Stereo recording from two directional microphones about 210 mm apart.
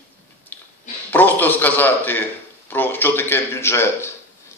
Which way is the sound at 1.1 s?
10° left (ahead or behind).